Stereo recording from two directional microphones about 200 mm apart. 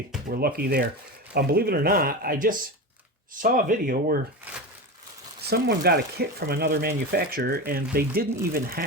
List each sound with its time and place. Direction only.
0.3 s speech: 50° right (ahead or behind)
5.4 s speech: 55° right (ahead or behind)